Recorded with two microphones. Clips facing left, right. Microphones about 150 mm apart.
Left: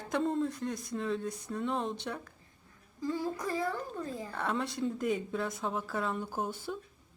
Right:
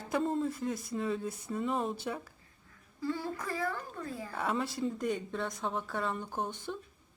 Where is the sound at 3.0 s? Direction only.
15° left (ahead or behind).